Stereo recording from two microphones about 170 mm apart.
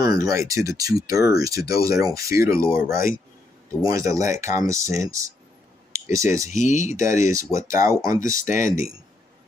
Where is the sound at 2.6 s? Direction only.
55° left (ahead or behind).